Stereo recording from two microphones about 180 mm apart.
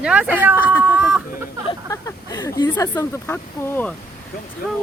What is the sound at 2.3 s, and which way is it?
Speech, 20° left (ahead or behind).